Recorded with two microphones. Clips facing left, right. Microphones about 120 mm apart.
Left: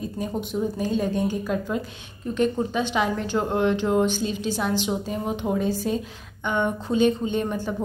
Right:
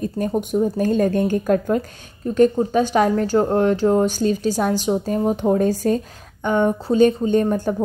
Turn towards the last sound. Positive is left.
turn(degrees=-45)  # may be behind; listen again after turning